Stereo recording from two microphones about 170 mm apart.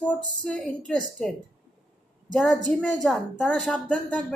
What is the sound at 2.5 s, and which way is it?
A woman's voice, centre (ahead or behind).